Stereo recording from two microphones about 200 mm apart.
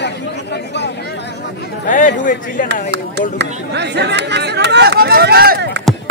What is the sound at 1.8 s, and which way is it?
Speech, 40° left (ahead or behind).